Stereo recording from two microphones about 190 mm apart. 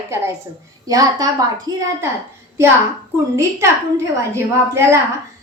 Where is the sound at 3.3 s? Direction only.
15° right (ahead or behind).